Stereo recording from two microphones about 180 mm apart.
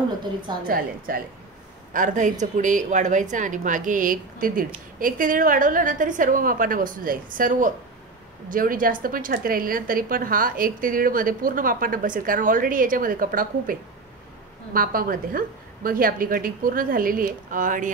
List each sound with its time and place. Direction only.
0.7 s a woman's voice: 55° right (ahead or behind)